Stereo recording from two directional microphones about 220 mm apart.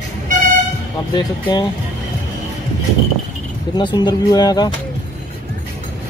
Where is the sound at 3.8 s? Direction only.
20° left (ahead or behind).